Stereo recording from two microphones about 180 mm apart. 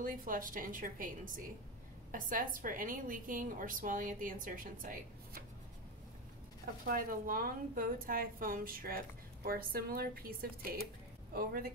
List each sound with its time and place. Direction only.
0.0 s a woman's voice: 50° right (ahead or behind)
6.6 s a woman's voice: 55° right (ahead or behind)